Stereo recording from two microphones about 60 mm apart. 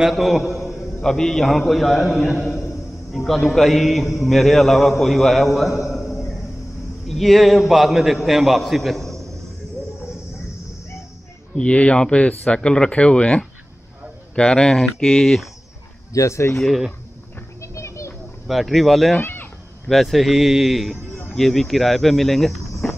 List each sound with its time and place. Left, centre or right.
0.0 s a man's voice: centre
11.5 s speech: centre
16.1 s speech: left
16.5 s a man's voice: centre
17.6 s a sound: left
18.5 s a man's voice: centre
19.2 s cat: left
19.9 s a man's voice: centre
22.8 s a sound: left